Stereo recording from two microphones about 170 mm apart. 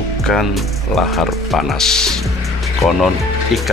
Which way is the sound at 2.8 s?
15° left (ahead or behind).